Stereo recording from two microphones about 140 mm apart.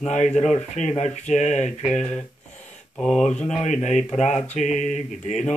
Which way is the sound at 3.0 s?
5° left (ahead or behind).